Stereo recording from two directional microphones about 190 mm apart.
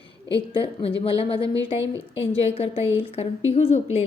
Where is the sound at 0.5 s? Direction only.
30° left (ahead or behind).